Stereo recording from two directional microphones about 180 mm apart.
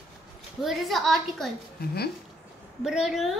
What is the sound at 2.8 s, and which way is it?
Speech, 5° right (ahead or behind).